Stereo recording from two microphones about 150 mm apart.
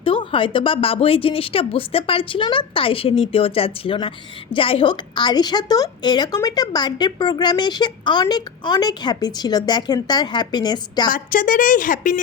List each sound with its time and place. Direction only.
0.0 s a woman's voice: 35° left (ahead or behind)
11.1 s a woman's voice: 65° left (ahead or behind)